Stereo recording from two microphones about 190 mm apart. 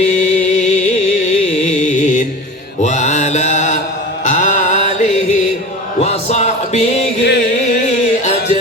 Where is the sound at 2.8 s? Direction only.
40° left (ahead or behind).